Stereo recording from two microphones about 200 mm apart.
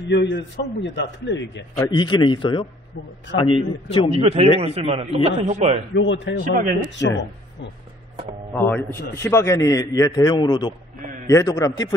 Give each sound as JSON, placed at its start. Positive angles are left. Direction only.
{"t": 0.1, "sound": "a man's voice", "side_deg": 60}
{"t": 1.8, "sound": "a man's voice", "side_deg": 20}
{"t": 4.2, "sound": "a man's voice", "side_deg": -30}
{"t": 5.9, "sound": "a man's voice", "side_deg": 65}
{"t": 6.4, "sound": "speech", "side_deg": -40}
{"t": 7.0, "sound": "a man's voice", "side_deg": 15}
{"t": 8.5, "sound": "a man's voice", "side_deg": 10}